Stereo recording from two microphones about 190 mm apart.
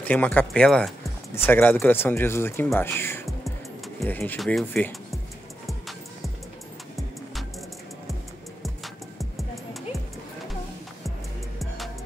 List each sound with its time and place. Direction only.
0.0 s speech: 10° left (ahead or behind)
5.7 s music: centre (ahead or behind)
8.6 s music: centre (ahead or behind)
11.6 s music: centre (ahead or behind)